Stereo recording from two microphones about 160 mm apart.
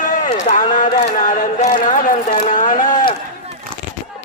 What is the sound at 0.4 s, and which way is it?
Speech, 50° left (ahead or behind).